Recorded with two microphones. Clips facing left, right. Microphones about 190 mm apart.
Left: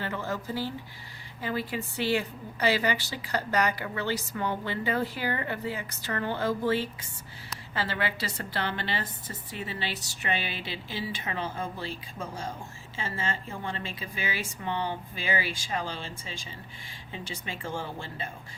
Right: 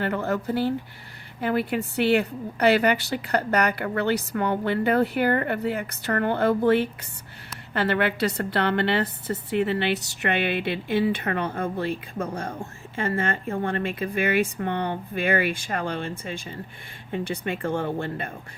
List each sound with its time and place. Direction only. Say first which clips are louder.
0.0 s a woman's voice: right 7 dB; 60° right (ahead or behind)